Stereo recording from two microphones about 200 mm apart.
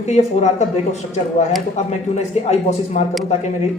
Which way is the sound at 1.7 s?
35° left (ahead or behind).